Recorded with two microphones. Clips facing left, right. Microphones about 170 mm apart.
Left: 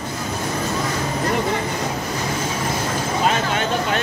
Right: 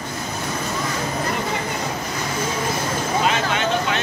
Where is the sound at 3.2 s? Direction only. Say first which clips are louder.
Left 3 dB; 45° left (ahead or behind).